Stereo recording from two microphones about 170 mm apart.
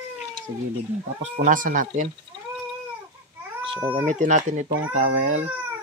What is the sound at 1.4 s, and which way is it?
Speech, 50° right (ahead or behind).